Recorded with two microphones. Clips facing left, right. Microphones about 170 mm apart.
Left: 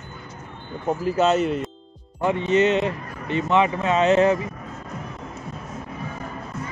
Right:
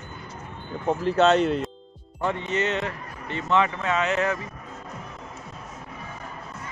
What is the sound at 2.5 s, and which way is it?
Speech, 20° left (ahead or behind).